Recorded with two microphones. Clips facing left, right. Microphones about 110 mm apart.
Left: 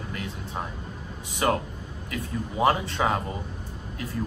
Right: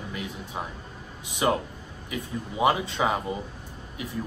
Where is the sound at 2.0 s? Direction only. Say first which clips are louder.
Left 1 dB; 15° right (ahead or behind).